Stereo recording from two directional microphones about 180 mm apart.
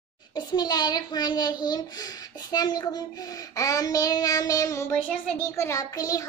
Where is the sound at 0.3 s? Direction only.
25° left (ahead or behind).